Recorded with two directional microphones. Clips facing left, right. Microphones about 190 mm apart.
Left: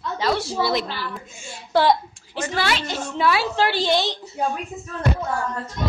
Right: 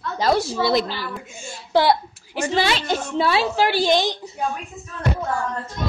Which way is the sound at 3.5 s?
10° right (ahead or behind).